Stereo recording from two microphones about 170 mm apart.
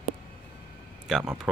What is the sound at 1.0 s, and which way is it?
Speech, 5° right (ahead or behind).